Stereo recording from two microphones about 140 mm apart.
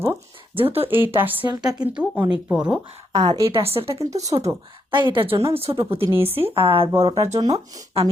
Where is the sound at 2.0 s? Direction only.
5° right (ahead or behind).